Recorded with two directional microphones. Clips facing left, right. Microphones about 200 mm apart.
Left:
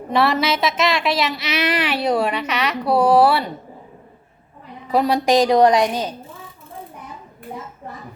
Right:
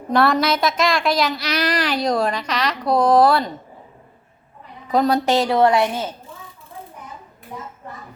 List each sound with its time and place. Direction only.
0.1 s a woman's voice: 5° left (ahead or behind)
4.9 s a woman's voice: 10° left (ahead or behind)